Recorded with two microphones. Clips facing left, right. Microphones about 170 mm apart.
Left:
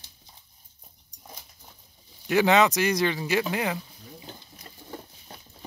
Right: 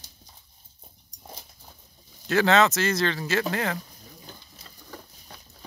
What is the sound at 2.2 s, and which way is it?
Speech, 15° left (ahead or behind).